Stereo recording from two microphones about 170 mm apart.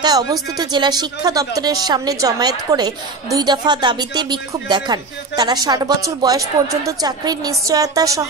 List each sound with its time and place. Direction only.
0.0 s speech: 25° right (ahead or behind)